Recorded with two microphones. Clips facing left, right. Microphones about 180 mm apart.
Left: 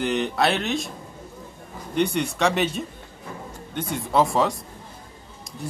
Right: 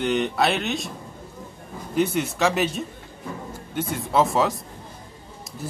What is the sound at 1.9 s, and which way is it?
Speech, 5° right (ahead or behind).